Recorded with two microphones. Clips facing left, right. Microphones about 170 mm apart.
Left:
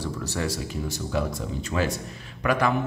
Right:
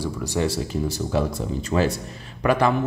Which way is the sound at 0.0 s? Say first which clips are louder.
Right 4 dB; 15° right (ahead or behind).